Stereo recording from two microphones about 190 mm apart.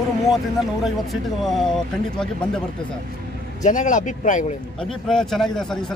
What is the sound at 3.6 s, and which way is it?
Speech, 40° left (ahead or behind).